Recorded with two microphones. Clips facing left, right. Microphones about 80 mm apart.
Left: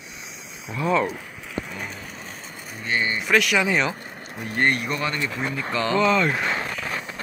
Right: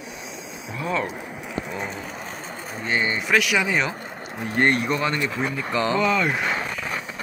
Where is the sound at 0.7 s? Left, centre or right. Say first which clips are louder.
Left 4 dB; centre.